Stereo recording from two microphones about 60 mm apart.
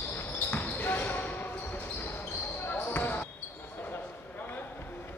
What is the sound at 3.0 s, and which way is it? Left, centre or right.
Basketball bounce, left.